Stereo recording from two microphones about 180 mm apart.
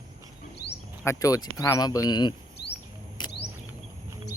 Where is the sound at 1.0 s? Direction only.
15° left (ahead or behind).